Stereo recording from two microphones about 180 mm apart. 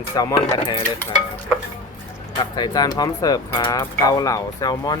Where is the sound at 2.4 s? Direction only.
25° left (ahead or behind).